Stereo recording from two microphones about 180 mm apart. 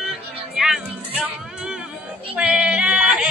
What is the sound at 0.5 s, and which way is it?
Music, 5° right (ahead or behind).